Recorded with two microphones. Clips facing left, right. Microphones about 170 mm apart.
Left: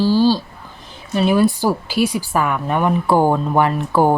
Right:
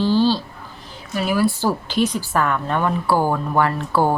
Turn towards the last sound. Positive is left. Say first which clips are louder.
# left 3 dB
turn(degrees=15)  # may be behind; listen again after turning